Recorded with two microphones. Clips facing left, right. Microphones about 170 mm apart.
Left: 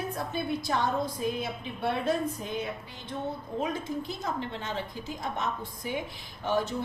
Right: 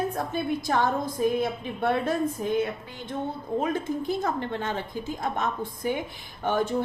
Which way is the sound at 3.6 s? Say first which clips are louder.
Right 5 dB; 50° right (ahead or behind).